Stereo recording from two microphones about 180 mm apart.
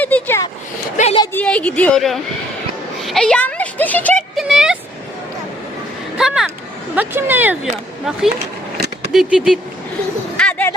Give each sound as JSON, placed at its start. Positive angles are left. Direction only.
{"t": 0.0, "sound": "vehicle", "side_deg": 10}
{"t": 0.9, "sound": "a sound", "side_deg": 35}
{"t": 1.2, "sound": "a woman's voice", "side_deg": 10}
{"t": 3.0, "sound": "a sound", "side_deg": 0}
{"t": 6.1, "sound": "speech", "side_deg": -5}
{"t": 9.1, "sound": "speech", "side_deg": -5}
{"t": 10.3, "sound": "bird", "side_deg": 5}